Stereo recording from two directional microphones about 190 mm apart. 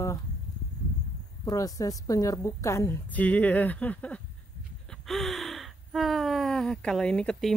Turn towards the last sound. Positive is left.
turn(degrees=5)  # may be behind; listen again after turning